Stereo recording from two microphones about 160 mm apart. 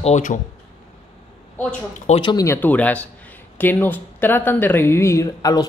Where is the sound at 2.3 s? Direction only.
20° left (ahead or behind).